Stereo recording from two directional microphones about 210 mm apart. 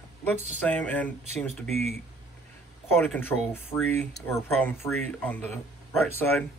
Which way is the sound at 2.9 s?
10° left (ahead or behind).